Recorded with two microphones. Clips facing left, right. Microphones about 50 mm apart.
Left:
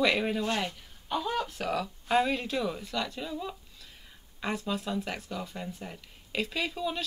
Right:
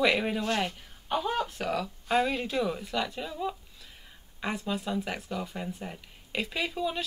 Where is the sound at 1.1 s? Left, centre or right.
Right.